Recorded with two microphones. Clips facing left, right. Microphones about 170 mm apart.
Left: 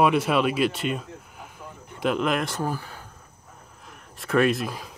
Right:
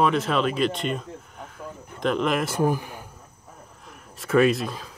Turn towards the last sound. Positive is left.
turn(degrees=0)  # may be behind; listen again after turning